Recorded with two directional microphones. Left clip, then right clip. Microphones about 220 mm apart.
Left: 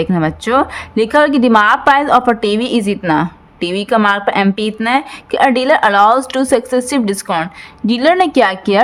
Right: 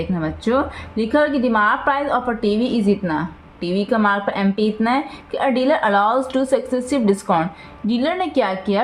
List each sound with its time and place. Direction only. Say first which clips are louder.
0.0 s a woman's voice: left 7 dB; 40° left (ahead or behind)